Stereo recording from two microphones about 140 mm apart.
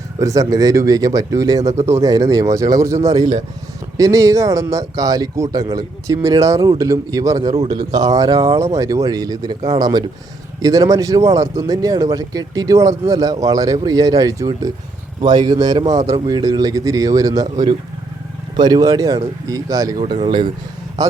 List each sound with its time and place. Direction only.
0.2 s speech: 25° right (ahead or behind)